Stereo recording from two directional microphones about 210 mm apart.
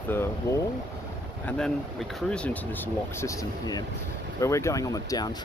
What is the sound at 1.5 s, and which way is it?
Speech, 5° left (ahead or behind).